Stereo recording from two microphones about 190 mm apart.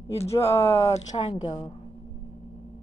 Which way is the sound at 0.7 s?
15° left (ahead or behind).